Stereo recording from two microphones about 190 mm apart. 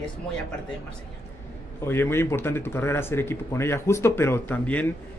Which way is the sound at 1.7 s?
10° left (ahead or behind).